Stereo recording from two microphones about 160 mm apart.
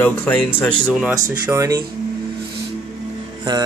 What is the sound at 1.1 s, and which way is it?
Speech, 20° right (ahead or behind).